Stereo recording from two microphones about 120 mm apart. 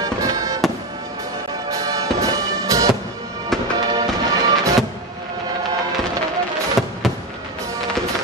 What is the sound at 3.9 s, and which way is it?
Music, 35° right (ahead or behind).